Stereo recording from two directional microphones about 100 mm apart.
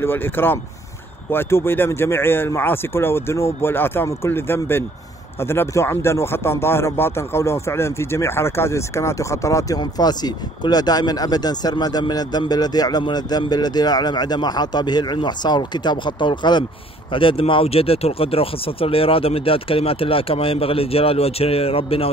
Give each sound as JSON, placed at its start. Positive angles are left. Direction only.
{"t": 0.0, "sound": "speech", "side_deg": 20}
{"t": 17.1, "sound": "speech", "side_deg": 60}